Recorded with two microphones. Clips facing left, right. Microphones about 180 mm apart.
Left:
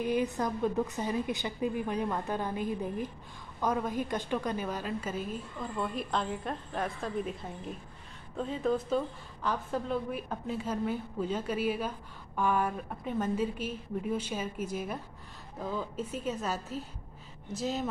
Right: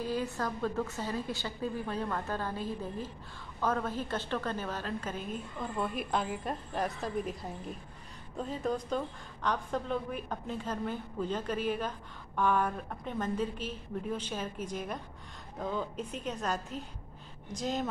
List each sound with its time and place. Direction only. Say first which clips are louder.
0.0 s a woman's voice: left 4 dB; 20° left (ahead or behind)